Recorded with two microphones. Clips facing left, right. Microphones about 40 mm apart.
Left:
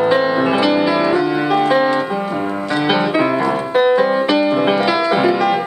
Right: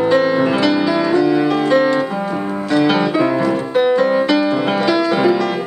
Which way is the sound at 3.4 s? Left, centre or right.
Centre.